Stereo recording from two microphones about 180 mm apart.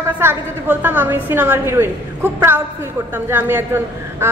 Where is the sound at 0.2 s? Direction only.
10° right (ahead or behind).